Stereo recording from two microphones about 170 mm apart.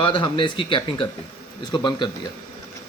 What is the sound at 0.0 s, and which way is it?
A man's voice, 30° left (ahead or behind).